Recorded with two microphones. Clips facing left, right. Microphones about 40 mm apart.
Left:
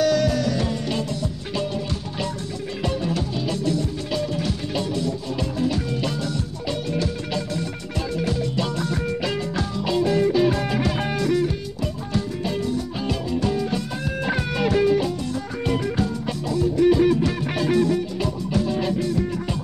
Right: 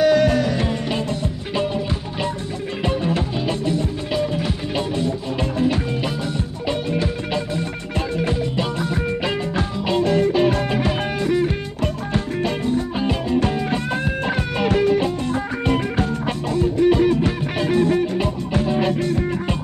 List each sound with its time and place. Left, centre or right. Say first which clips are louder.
0.0 s music: right 4 dB; right
2.8 s music: right 3 dB; right
9.9 s music: right 2 dB; right
11.8 s music: right 3 dB; right
12.6 s music: right 4 dB; right